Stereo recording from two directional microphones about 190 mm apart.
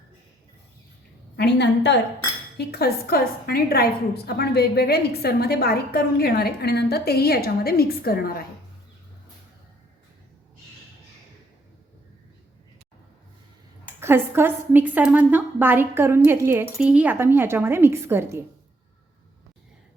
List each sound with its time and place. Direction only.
1.4 s a woman's voice: 65° left (ahead or behind)
13.8 s a woman's voice: 10° right (ahead or behind)